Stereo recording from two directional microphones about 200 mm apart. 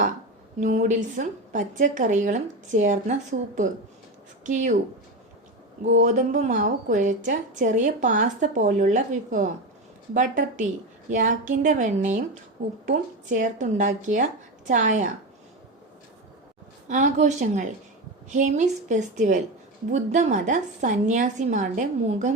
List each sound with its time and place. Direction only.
0.6 s a woman's voice: 40° right (ahead or behind)
5.8 s a woman's voice: 40° right (ahead or behind)
16.9 s a woman's voice: 35° right (ahead or behind)